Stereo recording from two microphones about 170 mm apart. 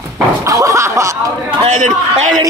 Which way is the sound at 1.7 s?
45° right (ahead or behind).